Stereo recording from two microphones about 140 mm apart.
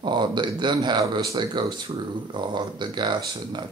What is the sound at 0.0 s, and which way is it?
Speech, 35° right (ahead or behind).